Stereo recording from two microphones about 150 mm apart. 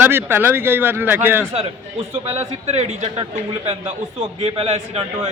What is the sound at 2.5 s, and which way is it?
Speech, 45° right (ahead or behind).